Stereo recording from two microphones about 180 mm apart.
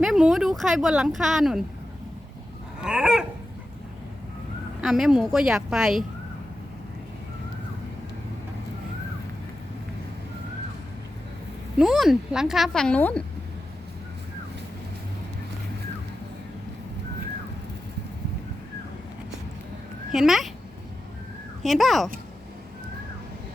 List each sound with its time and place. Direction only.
0.0 s speech: centre (ahead or behind)
2.8 s speech: 5° right (ahead or behind)
4.8 s speech: centre (ahead or behind)
11.8 s speech: centre (ahead or behind)
20.1 s speech: centre (ahead or behind)
21.6 s speech: centre (ahead or behind)